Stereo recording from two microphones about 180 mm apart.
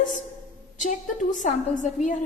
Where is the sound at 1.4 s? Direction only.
45° left (ahead or behind).